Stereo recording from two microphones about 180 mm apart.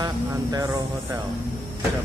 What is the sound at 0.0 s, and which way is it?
Speech, 20° right (ahead or behind).